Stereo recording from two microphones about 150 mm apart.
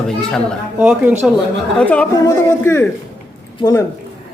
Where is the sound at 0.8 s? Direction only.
10° right (ahead or behind).